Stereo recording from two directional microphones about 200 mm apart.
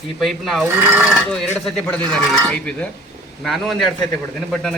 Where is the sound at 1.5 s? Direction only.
5° left (ahead or behind).